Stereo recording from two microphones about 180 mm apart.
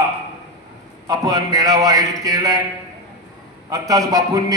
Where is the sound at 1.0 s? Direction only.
20° right (ahead or behind).